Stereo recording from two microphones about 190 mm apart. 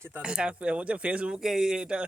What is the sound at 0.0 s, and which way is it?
Speech, 10° right (ahead or behind).